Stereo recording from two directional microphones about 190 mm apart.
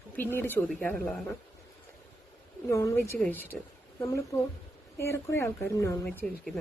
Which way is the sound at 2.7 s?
15° left (ahead or behind).